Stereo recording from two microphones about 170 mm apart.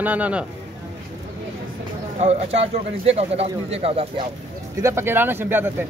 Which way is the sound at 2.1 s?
40° right (ahead or behind).